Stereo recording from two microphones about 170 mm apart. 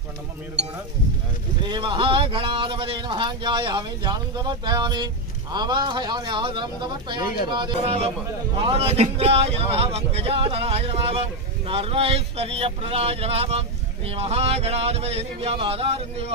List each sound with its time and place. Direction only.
1.6 s speech: 30° right (ahead or behind)